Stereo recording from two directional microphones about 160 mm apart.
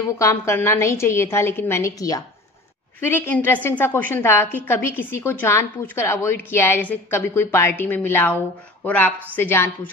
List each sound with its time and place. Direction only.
0.2 s a woman's voice: 15° left (ahead or behind)